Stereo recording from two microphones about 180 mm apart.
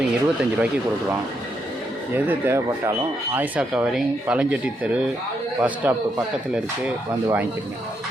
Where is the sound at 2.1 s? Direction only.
10° right (ahead or behind).